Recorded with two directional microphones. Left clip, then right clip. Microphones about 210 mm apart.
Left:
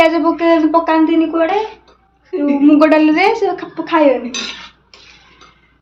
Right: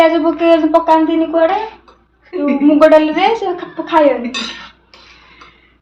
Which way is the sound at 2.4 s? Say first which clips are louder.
Right 1 dB; 30° left (ahead or behind).